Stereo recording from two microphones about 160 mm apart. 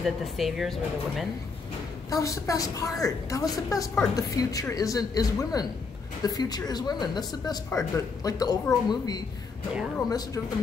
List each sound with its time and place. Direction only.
0.0 s speech: centre (ahead or behind)
2.0 s speech: 20° left (ahead or behind)